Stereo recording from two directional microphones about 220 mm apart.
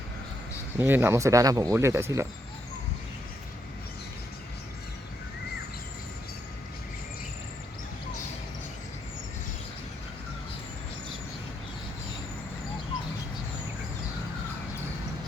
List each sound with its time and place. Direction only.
0.8 s speech: 10° right (ahead or behind)